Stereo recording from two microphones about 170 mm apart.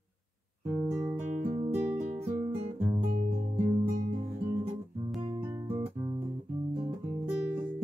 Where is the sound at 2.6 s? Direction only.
35° right (ahead or behind).